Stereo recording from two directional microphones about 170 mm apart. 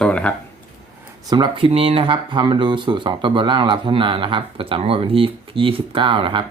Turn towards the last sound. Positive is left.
turn(degrees=-30)  # may be behind; listen again after turning